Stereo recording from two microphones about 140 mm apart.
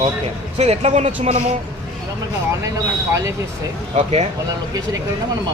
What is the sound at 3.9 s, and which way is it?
Speech, 50° right (ahead or behind).